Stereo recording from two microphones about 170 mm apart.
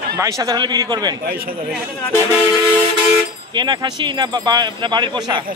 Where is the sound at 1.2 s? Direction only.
65° right (ahead or behind).